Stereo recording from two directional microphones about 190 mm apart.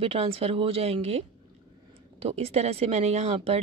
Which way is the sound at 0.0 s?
30° right (ahead or behind).